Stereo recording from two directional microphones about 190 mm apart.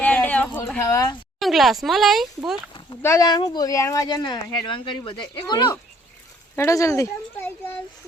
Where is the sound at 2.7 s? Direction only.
20° left (ahead or behind).